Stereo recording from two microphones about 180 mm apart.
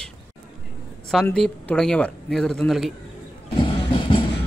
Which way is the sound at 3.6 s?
25° left (ahead or behind).